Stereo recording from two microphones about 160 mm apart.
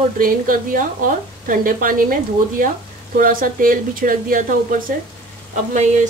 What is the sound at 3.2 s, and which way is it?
Speech, 60° right (ahead or behind).